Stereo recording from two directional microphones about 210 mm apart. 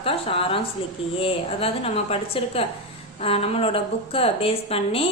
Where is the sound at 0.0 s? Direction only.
25° left (ahead or behind).